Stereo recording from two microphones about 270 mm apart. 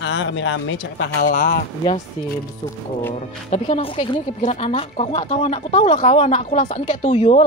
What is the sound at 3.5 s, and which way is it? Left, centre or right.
Speech, left.